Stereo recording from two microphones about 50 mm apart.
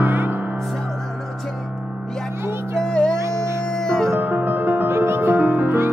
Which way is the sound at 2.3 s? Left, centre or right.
Right.